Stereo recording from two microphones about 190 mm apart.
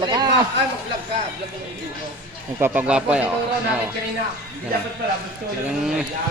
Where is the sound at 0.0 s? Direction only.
25° right (ahead or behind).